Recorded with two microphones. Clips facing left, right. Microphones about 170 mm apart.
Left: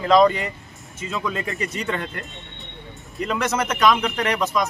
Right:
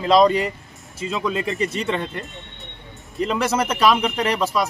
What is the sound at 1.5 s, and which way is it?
Speech, 30° right (ahead or behind).